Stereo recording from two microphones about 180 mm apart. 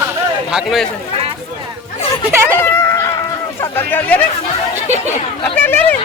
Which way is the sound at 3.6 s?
10° left (ahead or behind).